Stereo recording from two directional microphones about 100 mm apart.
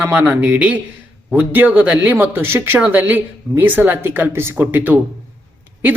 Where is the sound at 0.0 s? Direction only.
15° right (ahead or behind).